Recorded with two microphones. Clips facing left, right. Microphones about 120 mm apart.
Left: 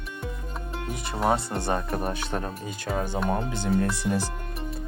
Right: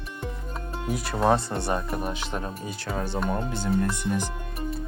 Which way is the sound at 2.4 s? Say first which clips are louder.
Left 1 dB; 35° left (ahead or behind).